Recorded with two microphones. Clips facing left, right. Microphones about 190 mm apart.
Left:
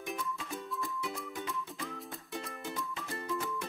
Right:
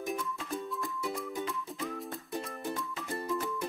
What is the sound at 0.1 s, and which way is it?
Music, centre (ahead or behind).